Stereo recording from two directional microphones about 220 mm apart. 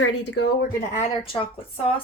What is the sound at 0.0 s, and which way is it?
Speech, 50° left (ahead or behind).